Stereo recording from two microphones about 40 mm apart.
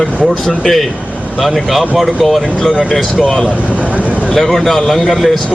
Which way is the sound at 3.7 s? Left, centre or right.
Right.